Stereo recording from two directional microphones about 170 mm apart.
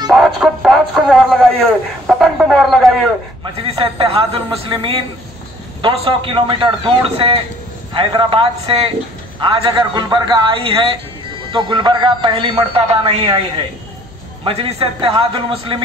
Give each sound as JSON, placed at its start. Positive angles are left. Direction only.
{"t": 0.1, "sound": "speech", "side_deg": 0}
{"t": 3.6, "sound": "a man's voice", "side_deg": -35}
{"t": 14.4, "sound": "a man's voice", "side_deg": -35}